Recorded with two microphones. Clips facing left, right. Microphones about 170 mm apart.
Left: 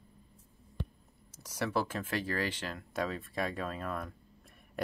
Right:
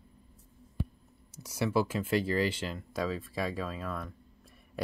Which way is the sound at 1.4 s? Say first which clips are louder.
Right 4 dB; 10° right (ahead or behind).